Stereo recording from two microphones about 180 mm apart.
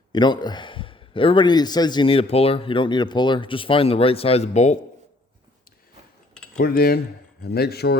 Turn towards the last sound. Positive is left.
turn(degrees=60)  # may be behind; listen again after turning